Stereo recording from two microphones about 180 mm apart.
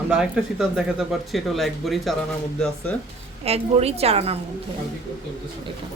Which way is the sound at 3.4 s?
35° right (ahead or behind).